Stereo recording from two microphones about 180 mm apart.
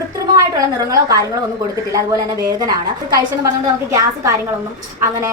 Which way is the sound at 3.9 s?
15° right (ahead or behind).